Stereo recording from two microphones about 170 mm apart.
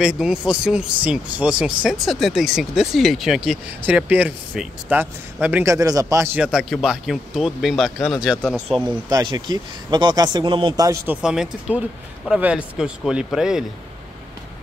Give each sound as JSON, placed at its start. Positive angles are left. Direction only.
{"t": 0.0, "sound": "speech", "side_deg": -5}
{"t": 8.8, "sound": "speech", "side_deg": -25}
{"t": 10.9, "sound": "speech", "side_deg": -10}